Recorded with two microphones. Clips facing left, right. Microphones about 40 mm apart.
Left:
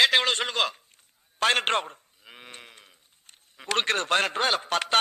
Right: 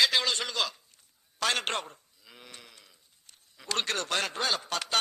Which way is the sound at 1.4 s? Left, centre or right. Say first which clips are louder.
Left 6 dB; left.